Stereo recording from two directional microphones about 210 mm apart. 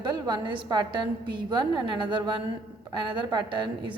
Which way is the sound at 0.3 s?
20° right (ahead or behind).